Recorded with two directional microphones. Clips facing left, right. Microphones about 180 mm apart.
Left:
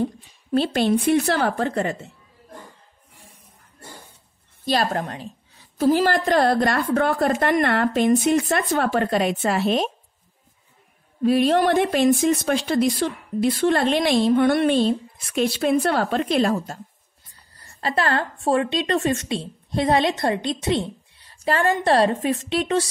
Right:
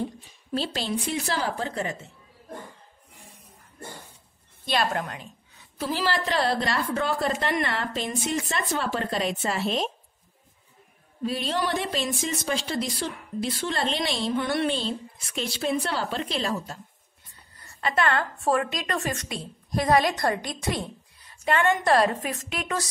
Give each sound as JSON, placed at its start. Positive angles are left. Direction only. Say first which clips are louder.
{"t": 0.5, "sound": "speech", "louder": "left 9 dB", "side_deg": 60}
{"t": 4.6, "sound": "speech", "louder": "left 4 dB", "side_deg": 40}
{"t": 11.2, "sound": "speech", "louder": "left 10 dB", "side_deg": 60}
{"t": 17.3, "sound": "a woman's voice", "louder": "even", "side_deg": 35}